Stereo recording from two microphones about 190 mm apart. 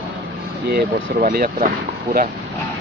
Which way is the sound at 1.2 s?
50° right (ahead or behind).